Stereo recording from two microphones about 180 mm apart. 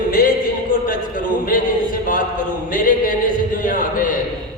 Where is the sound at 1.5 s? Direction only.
50° left (ahead or behind).